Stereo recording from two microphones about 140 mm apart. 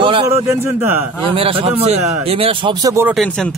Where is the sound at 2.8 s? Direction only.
20° right (ahead or behind).